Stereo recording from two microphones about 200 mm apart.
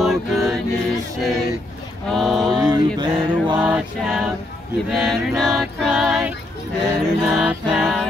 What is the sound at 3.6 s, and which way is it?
Music, 5° right (ahead or behind).